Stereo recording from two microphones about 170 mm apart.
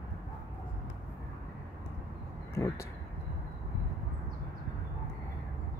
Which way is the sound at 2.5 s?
15° left (ahead or behind).